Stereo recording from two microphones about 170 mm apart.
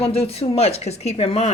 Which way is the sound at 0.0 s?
35° left (ahead or behind).